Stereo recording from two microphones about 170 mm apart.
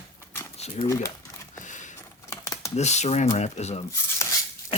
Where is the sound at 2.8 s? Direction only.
40° left (ahead or behind).